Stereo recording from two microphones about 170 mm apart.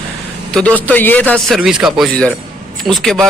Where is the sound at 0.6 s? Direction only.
10° left (ahead or behind).